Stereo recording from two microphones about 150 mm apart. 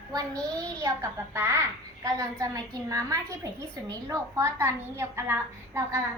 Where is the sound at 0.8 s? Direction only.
20° right (ahead or behind).